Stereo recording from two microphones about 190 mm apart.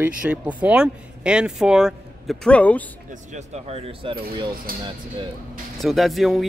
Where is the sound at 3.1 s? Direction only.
40° right (ahead or behind).